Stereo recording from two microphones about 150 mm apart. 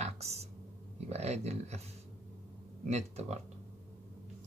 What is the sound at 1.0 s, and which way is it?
Speech, 45° right (ahead or behind).